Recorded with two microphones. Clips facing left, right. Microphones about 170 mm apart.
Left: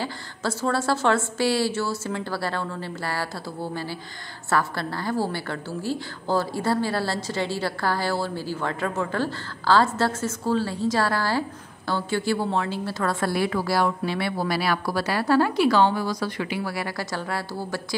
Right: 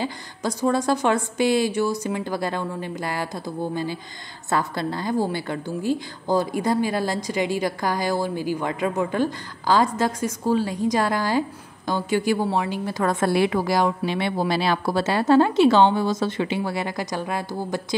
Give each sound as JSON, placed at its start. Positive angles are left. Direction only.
{"t": 0.0, "sound": "a woman's voice", "side_deg": -15}